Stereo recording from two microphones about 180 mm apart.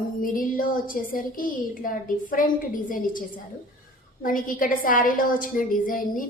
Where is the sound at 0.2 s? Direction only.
50° left (ahead or behind).